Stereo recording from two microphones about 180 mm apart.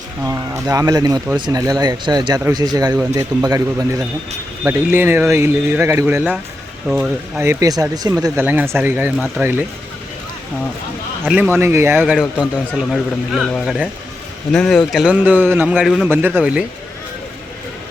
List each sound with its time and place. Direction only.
0.3 s speech: 20° right (ahead or behind)
11.3 s a man's voice: 10° right (ahead or behind)